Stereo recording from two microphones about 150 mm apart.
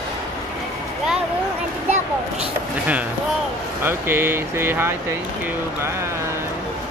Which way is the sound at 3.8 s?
15° right (ahead or behind).